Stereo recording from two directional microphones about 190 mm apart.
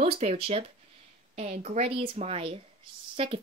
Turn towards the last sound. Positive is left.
turn(degrees=-30)  # may be behind; listen again after turning